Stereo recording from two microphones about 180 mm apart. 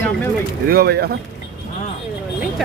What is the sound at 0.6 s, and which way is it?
Speech, 60° right (ahead or behind).